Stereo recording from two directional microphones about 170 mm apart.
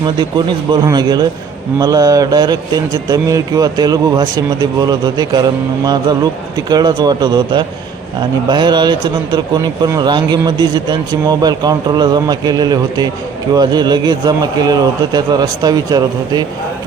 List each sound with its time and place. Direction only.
0.0 s speech: 25° right (ahead or behind)